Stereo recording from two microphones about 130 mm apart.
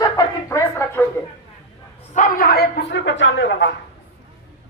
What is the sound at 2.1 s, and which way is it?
Speech, 75° left (ahead or behind).